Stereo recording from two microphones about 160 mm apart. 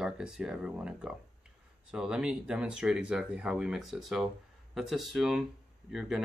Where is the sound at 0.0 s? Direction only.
5° right (ahead or behind).